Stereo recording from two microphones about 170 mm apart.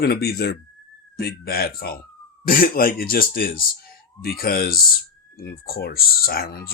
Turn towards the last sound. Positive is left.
turn(degrees=60)  # may be behind; listen again after turning